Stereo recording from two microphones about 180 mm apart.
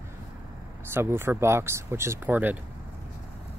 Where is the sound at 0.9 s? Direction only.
15° right (ahead or behind).